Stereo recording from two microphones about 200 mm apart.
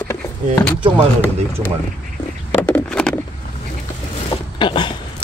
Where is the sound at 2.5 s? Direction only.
10° left (ahead or behind).